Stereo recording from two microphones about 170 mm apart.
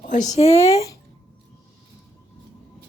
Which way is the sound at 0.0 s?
45° left (ahead or behind).